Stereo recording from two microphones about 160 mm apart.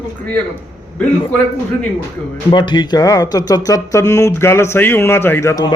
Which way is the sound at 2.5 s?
30° left (ahead or behind).